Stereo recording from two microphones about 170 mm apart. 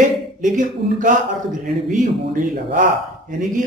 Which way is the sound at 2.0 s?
50° right (ahead or behind).